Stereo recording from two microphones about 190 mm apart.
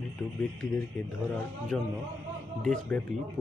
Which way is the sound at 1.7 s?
5° left (ahead or behind).